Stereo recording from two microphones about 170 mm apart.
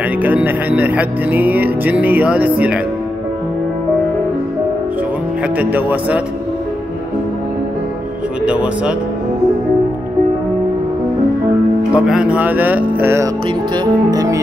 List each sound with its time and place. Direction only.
0.2 s speech: 10° right (ahead or behind)
5.6 s speech: 10° right (ahead or behind)
8.5 s speech: 5° right (ahead or behind)
11.9 s speech: 5° right (ahead or behind)